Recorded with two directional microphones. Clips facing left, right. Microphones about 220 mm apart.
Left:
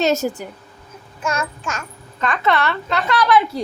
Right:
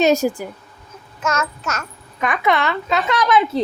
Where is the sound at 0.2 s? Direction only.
15° right (ahead or behind).